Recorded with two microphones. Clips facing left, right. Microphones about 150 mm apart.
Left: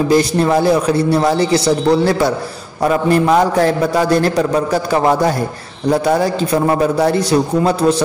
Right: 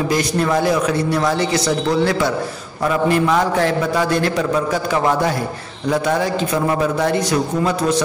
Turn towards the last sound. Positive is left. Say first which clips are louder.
# left 4 dB
turn(degrees=30)  # may be behind; listen again after turning